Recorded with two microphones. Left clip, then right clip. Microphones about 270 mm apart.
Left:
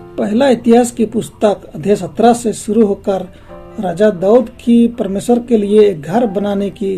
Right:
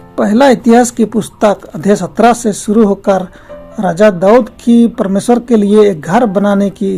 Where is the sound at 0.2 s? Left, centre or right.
Right.